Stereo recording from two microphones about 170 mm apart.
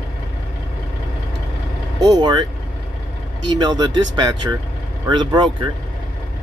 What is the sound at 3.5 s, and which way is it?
Speech, 25° right (ahead or behind).